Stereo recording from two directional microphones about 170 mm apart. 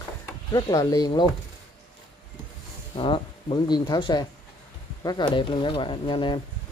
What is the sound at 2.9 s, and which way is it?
Speech, 30° left (ahead or behind).